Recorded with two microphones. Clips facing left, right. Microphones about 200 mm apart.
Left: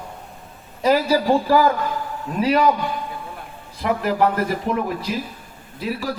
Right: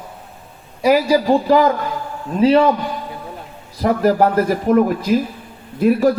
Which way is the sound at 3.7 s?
40° right (ahead or behind).